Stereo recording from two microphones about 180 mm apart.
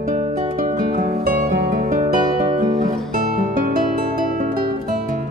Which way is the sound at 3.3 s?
50° right (ahead or behind).